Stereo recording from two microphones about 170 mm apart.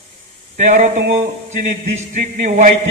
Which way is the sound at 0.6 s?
45° right (ahead or behind).